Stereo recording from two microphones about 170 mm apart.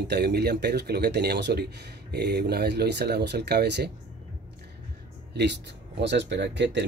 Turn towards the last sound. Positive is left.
turn(degrees=-90)